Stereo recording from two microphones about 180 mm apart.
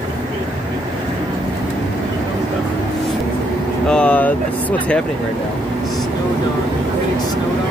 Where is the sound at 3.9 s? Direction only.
5° left (ahead or behind).